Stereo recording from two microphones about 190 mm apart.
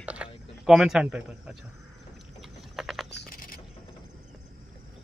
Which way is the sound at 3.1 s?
55° left (ahead or behind).